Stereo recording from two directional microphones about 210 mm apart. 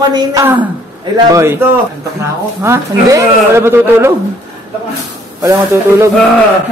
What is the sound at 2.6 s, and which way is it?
A man's voice, 15° right (ahead or behind).